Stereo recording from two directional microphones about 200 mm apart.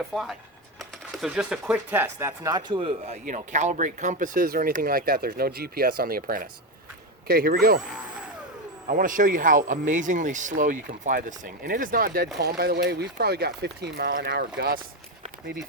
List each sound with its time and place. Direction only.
0.1 s speech: centre (ahead or behind); by 3.2 s 25° right (ahead or behind)
3.2 s speech: 35° right (ahead or behind)
8.9 s speech: 40° right (ahead or behind)